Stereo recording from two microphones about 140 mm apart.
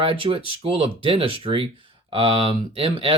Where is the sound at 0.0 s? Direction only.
40° right (ahead or behind).